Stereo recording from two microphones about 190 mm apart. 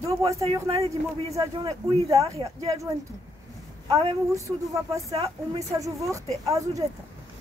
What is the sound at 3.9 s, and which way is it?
Speech, 20° right (ahead or behind).